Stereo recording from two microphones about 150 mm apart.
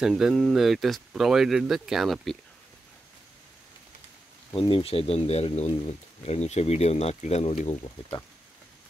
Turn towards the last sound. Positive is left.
turn(degrees=50)  # may be behind; listen again after turning